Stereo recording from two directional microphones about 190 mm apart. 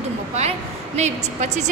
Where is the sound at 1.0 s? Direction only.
35° right (ahead or behind).